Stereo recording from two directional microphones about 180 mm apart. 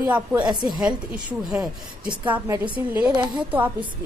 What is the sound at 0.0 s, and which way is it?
A woman's voice, 10° right (ahead or behind).